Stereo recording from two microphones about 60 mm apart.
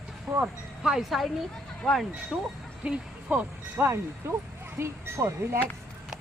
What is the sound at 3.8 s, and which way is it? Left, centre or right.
Speech, right.